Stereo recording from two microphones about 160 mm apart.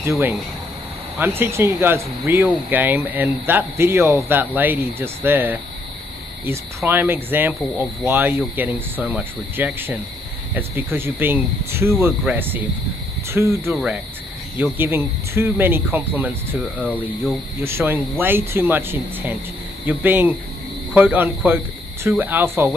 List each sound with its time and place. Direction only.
1.1 s speech: 15° right (ahead or behind)